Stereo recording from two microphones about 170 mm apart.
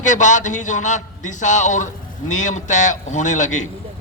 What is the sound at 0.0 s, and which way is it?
A man's voice, 45° left (ahead or behind).